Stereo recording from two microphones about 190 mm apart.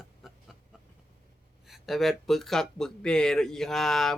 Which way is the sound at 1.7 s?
Centre (ahead or behind).